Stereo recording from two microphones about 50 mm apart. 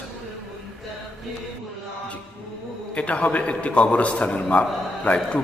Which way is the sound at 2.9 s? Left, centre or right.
Left.